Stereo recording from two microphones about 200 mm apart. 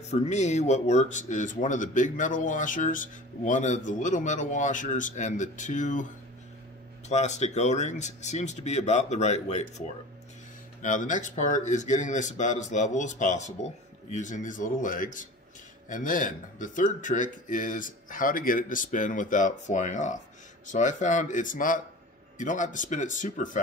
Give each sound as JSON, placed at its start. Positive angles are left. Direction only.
{"t": 0.1, "sound": "speech", "side_deg": 35}
{"t": 7.1, "sound": "speech", "side_deg": 35}